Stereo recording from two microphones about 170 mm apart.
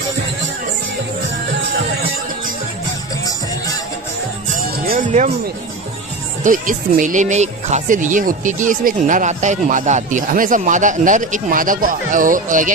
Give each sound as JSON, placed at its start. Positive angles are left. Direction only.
{"t": 4.8, "sound": "music", "side_deg": -50}
{"t": 6.4, "sound": "speech", "side_deg": -50}